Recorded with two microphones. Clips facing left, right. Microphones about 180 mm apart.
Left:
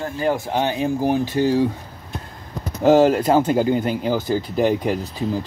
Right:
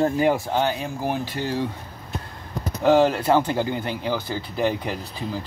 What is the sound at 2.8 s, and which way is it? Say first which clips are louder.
Speech: left 4 dB; 40° left (ahead or behind).